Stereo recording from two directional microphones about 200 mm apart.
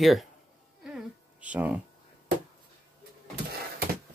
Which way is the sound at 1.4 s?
5° right (ahead or behind).